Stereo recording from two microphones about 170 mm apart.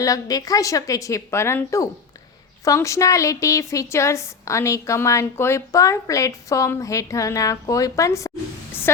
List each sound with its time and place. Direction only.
0.0 s a woman's voice: 20° left (ahead or behind)